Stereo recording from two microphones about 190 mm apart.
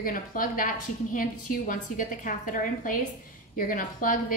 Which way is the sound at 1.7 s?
45° left (ahead or behind).